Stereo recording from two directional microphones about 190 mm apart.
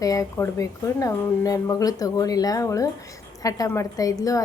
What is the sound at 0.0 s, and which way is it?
A woman's voice, 15° left (ahead or behind).